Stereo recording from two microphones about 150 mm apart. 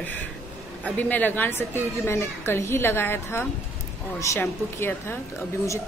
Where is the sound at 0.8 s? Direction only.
10° left (ahead or behind).